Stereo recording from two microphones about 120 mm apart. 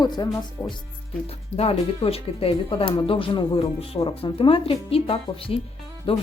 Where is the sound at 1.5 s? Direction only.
55° left (ahead or behind).